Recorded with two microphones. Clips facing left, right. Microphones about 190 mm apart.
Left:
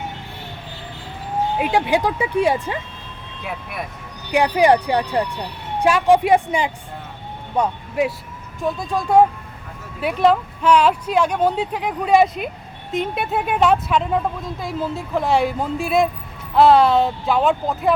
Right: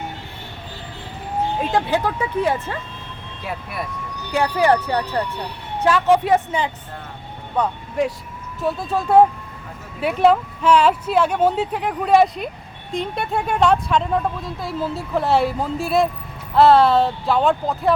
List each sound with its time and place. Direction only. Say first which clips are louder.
1.5 s speech: left 2 dB; 10° left (ahead or behind)
3.4 s speech: right 1 dB; centre (ahead or behind)
4.3 s speech: left 2 dB; 15° left (ahead or behind)
8.6 s speech: even; 5° right (ahead or behind)
10.2 s speech: even; 5° right (ahead or behind)